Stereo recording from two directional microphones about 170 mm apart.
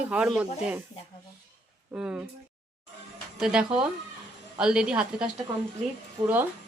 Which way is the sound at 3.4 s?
5° right (ahead or behind).